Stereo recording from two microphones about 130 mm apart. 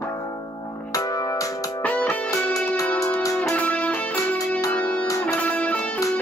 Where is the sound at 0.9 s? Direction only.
25° left (ahead or behind).